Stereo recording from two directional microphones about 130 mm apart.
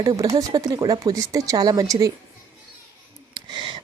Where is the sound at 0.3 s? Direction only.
30° right (ahead or behind).